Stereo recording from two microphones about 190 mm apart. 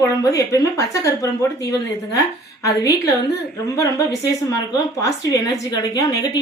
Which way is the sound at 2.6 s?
15° left (ahead or behind).